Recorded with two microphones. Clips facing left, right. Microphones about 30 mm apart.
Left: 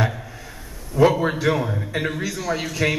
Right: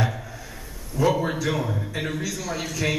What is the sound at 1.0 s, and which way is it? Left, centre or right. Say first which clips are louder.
Speech: left 6 dB; left.